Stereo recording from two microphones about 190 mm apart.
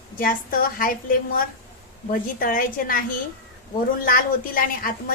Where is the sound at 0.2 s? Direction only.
45° left (ahead or behind).